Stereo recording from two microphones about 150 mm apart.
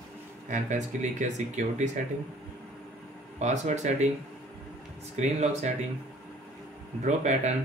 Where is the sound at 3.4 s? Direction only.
50° right (ahead or behind).